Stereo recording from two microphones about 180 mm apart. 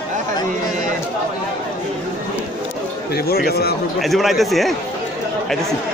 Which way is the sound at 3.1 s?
60° left (ahead or behind).